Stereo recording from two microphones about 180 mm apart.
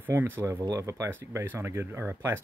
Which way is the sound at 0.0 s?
10° right (ahead or behind).